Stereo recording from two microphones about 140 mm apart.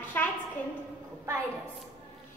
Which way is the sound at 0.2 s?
15° left (ahead or behind).